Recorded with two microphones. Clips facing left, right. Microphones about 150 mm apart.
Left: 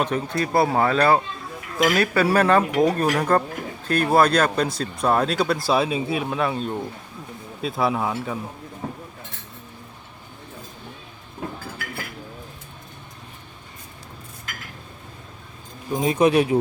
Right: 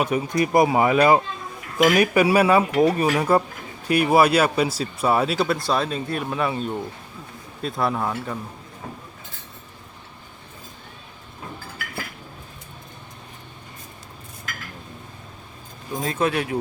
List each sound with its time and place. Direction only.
0.0 s speech: 10° right (ahead or behind)
16.0 s speech: 15° left (ahead or behind)